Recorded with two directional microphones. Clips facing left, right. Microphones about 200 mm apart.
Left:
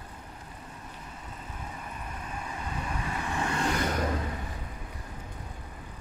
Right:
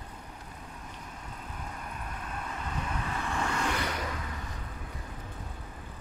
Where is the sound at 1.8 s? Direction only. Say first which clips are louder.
Even; 5° left (ahead or behind).